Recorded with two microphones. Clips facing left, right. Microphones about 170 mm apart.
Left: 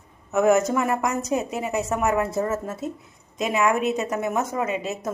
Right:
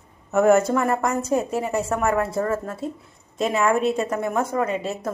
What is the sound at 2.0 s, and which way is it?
Speech, 20° left (ahead or behind).